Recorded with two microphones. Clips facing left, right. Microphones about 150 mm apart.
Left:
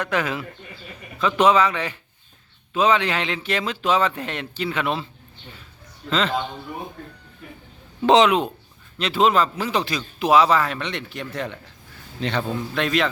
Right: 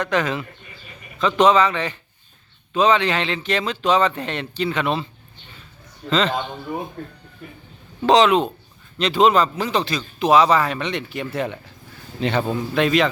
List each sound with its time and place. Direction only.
0.0 s a man's voice: 10° left (ahead or behind)
6.1 s a man's voice: 5° left (ahead or behind)
8.0 s speech: 20° left (ahead or behind)
8.3 s a man's voice: 10° left (ahead or behind); by 11.5 s 10° right (ahead or behind)
12.7 s a man's voice: centre (ahead or behind)